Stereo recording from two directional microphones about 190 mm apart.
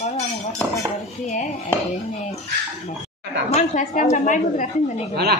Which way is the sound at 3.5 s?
40° left (ahead or behind).